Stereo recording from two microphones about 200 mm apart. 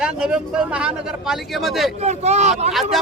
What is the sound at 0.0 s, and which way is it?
A man's voice, 5° right (ahead or behind).